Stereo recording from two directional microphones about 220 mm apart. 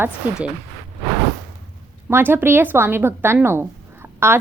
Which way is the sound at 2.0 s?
10° right (ahead or behind).